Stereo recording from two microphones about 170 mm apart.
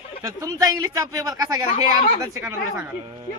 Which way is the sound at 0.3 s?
20° right (ahead or behind).